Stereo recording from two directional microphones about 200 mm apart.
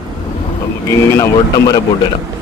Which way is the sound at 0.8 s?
15° left (ahead or behind).